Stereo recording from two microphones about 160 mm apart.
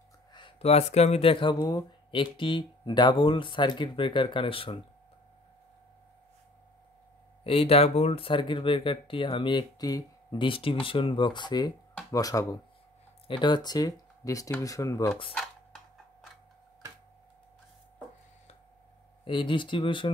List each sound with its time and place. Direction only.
0.3 s speech: 35° left (ahead or behind)
7.4 s speech: 35° left (ahead or behind); by 15.1 s 20° left (ahead or behind)
19.2 s speech: 30° left (ahead or behind)